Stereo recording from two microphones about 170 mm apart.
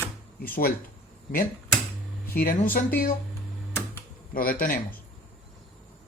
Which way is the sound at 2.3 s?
55° left (ahead or behind).